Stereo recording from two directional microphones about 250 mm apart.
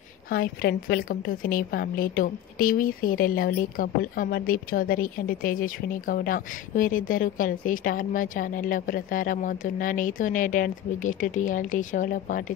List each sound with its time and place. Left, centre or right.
0.3 s a woman's voice: left